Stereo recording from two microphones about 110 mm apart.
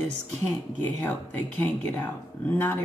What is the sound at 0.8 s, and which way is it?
Speech, 15° left (ahead or behind).